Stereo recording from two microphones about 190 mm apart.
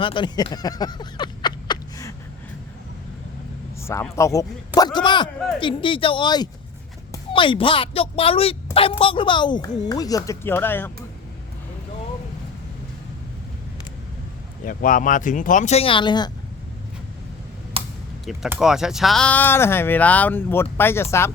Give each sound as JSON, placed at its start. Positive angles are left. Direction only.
{"t": 0.0, "sound": "speech", "side_deg": 25}
{"t": 3.8, "sound": "speech", "side_deg": 15}
{"t": 14.6, "sound": "speech", "side_deg": 45}
{"t": 17.7, "sound": "a sound", "side_deg": -30}
{"t": 18.3, "sound": "speech", "side_deg": -5}